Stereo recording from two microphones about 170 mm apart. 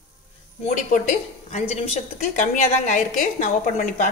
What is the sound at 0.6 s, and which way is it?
A woman's voice, 40° left (ahead or behind).